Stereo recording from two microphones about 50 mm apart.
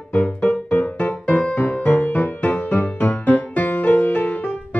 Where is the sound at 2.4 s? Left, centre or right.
Left.